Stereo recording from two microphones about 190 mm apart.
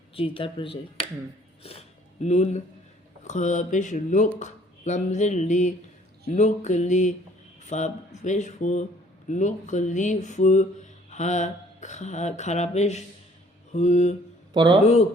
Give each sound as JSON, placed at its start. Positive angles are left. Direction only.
{"t": 0.1, "sound": "speech", "side_deg": 30}
{"t": 2.2, "sound": "speech", "side_deg": 35}
{"t": 4.4, "sound": "a sound", "side_deg": 40}
{"t": 6.3, "sound": "speech", "side_deg": 40}
{"t": 14.5, "sound": "a man's voice", "side_deg": -25}